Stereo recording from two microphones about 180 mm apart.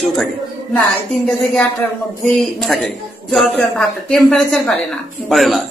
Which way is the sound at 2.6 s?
Centre (ahead or behind).